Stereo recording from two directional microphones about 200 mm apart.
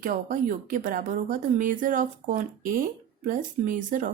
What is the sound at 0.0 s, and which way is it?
A woman's voice, 45° right (ahead or behind).